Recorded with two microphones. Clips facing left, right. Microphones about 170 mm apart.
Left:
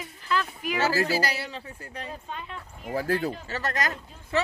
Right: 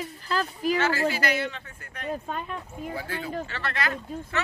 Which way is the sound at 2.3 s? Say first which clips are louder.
Right 5 dB; 50° right (ahead or behind).